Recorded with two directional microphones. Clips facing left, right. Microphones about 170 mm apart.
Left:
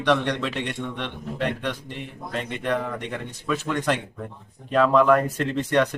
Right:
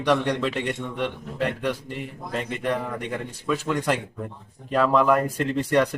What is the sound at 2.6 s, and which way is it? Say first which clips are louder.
Speech: left 2 dB; 10° right (ahead or behind).